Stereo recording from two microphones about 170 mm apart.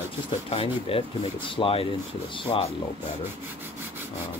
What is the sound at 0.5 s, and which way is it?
Speech, 35° left (ahead or behind).